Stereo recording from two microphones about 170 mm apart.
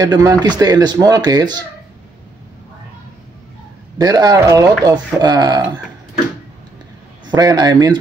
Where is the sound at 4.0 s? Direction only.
20° right (ahead or behind).